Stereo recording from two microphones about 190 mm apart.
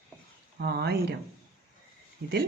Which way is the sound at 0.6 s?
60° right (ahead or behind).